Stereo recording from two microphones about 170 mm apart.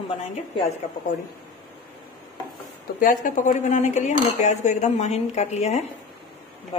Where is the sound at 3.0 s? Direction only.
50° left (ahead or behind).